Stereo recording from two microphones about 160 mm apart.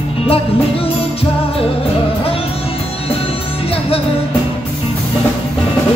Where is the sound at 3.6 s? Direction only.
35° left (ahead or behind).